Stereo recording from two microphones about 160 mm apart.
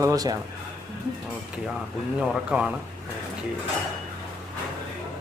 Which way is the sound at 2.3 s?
5° right (ahead or behind).